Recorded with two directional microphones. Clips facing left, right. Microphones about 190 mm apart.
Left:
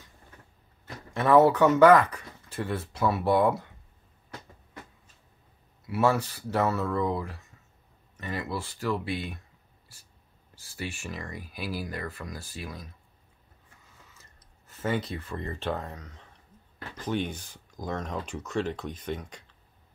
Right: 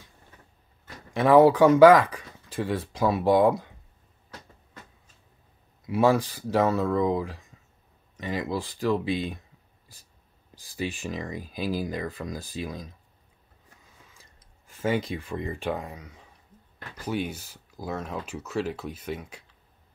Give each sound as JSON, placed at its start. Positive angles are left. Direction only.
{"t": 1.1, "sound": "speech", "side_deg": -15}
{"t": 5.9, "sound": "speech", "side_deg": -15}
{"t": 10.8, "sound": "speech", "side_deg": -15}
{"t": 14.8, "sound": "speech", "side_deg": -10}